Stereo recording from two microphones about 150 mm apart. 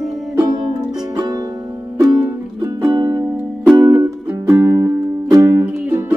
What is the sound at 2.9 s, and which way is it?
Music, 25° right (ahead or behind).